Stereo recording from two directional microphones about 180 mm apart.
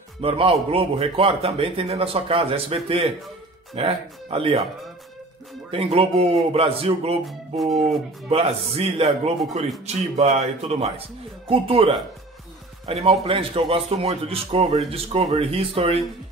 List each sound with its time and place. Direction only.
0.2 s a man's voice: 30° right (ahead or behind)
5.7 s a man's voice: 30° right (ahead or behind)